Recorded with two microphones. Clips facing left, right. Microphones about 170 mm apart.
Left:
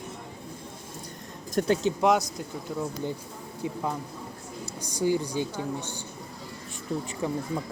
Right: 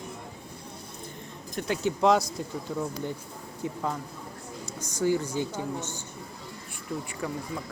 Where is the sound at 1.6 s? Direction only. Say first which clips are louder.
Left 7 dB; 45° left (ahead or behind).